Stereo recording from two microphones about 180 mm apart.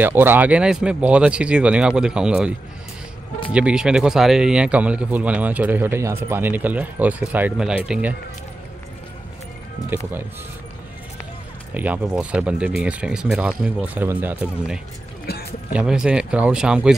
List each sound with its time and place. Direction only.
0.0 s speech: 10° right (ahead or behind)
3.5 s speech: 5° right (ahead or behind)
11.7 s speech: 10° right (ahead or behind)
15.3 s music: 65° left (ahead or behind)
15.7 s speech: 5° right (ahead or behind)